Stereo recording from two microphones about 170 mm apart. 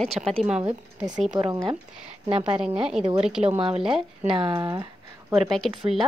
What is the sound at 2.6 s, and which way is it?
Speech, 5° right (ahead or behind).